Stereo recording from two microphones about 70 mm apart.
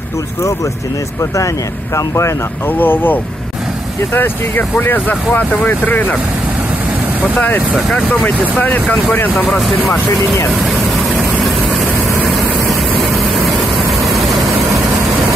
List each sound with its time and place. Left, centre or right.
2.0 s speech: left
2.8 s speech: left
7.3 s speech: left
9.4 s speech: centre
12.3 s vehicle: centre